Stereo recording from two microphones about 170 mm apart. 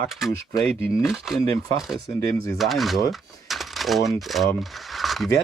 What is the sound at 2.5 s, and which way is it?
Speech, centre (ahead or behind).